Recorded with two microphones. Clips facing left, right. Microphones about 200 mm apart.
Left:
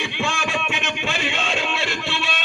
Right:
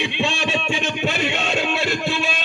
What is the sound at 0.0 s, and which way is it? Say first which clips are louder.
Music: right 3 dB; 20° right (ahead or behind).